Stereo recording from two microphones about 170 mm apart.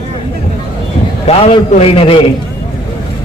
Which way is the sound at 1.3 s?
35° left (ahead or behind).